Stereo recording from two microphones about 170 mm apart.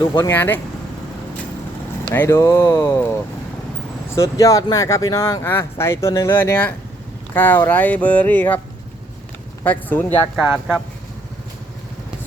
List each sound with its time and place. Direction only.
0.0 s speech: 15° left (ahead or behind)
2.0 s speech: 15° left (ahead or behind)
9.6 s speech: 10° left (ahead or behind)
10.3 s speech: 10° right (ahead or behind)